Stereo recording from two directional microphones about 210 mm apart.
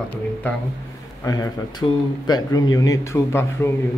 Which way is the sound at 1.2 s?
15° left (ahead or behind).